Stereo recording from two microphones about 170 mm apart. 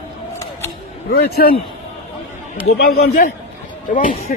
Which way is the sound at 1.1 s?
65° left (ahead or behind).